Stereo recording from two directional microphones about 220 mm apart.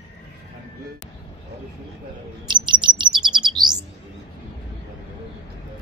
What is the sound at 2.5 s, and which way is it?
Chirp, 20° right (ahead or behind).